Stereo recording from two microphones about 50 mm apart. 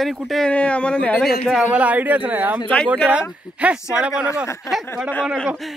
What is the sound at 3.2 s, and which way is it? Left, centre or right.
Speech, right.